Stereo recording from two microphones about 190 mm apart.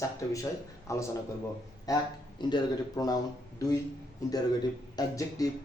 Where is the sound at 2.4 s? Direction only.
25° left (ahead or behind).